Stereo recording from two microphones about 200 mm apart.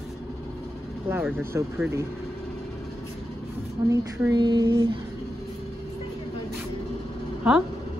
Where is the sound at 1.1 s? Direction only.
10° right (ahead or behind).